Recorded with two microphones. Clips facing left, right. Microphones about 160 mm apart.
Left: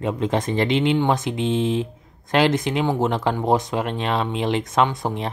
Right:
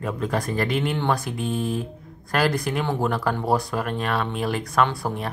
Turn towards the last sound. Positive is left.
turn(degrees=20)  # may be behind; listen again after turning